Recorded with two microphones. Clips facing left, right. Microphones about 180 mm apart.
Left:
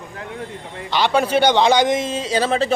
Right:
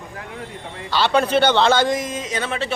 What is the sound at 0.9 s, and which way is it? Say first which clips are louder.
A man's voice: even; 15° left (ahead or behind).